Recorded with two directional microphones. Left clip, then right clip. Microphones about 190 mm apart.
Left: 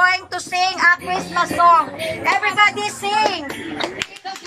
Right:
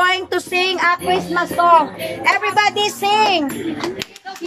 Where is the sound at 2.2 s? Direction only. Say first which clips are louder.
Even; 60° right (ahead or behind).